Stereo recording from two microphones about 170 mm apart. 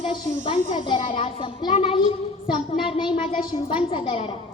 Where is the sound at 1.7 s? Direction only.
35° left (ahead or behind).